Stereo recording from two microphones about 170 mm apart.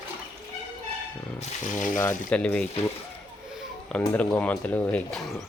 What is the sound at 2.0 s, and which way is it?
Speech, 10° left (ahead or behind).